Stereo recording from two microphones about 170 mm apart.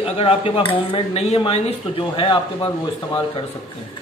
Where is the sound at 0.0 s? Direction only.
35° left (ahead or behind).